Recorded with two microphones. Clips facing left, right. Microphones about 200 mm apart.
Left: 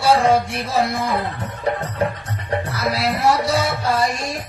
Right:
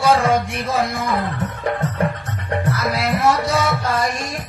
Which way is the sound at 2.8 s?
30° left (ahead or behind).